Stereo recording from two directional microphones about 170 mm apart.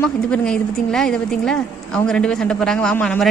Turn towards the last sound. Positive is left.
turn(degrees=5)  # may be behind; listen again after turning